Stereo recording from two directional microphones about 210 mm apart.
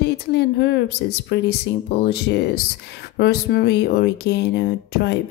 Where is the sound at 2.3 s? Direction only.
50° left (ahead or behind).